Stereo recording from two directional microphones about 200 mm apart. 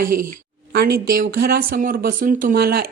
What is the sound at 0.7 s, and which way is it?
Speech, 50° right (ahead or behind).